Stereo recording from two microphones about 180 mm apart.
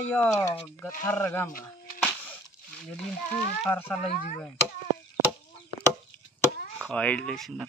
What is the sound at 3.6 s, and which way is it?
Speech, 5° left (ahead or behind).